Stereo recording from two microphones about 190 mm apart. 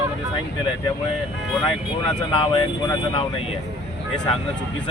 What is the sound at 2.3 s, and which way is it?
Speech, 25° left (ahead or behind).